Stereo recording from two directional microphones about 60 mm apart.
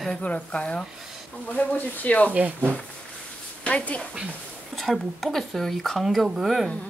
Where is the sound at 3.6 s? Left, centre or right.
Left.